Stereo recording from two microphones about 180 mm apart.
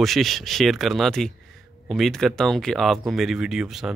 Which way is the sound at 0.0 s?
Centre (ahead or behind).